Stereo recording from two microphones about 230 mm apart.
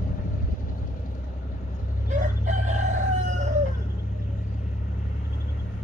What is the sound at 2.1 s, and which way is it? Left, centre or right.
Crowing, right.